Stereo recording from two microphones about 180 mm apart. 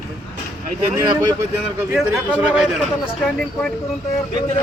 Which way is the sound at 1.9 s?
5° right (ahead or behind).